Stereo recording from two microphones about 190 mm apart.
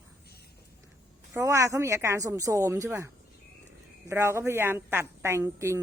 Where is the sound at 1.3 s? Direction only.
15° right (ahead or behind).